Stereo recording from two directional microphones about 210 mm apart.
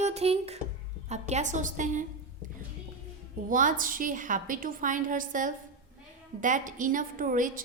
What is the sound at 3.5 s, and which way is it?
A woman's voice, 40° right (ahead or behind).